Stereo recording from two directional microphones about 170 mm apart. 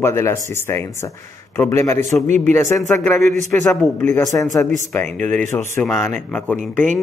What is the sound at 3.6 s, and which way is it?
Speech, 15° left (ahead or behind).